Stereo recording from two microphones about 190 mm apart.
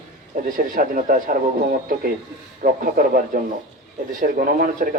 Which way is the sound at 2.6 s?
45° right (ahead or behind).